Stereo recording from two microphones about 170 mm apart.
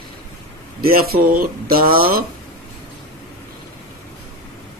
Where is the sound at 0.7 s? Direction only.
60° right (ahead or behind).